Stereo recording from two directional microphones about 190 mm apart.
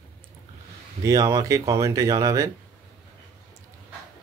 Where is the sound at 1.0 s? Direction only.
20° right (ahead or behind).